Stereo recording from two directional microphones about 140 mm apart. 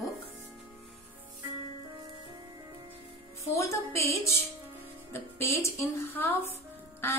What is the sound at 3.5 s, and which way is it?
Speech, 20° left (ahead or behind).